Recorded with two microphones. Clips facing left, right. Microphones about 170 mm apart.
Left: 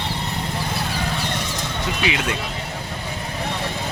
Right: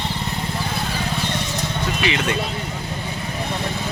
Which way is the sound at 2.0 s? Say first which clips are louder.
Right 1 dB; 5° left (ahead or behind).